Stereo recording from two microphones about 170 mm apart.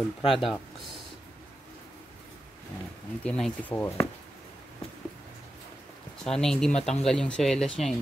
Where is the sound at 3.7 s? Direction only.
15° left (ahead or behind).